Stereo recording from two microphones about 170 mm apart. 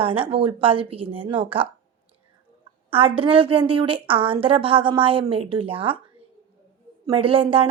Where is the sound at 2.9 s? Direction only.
30° right (ahead or behind).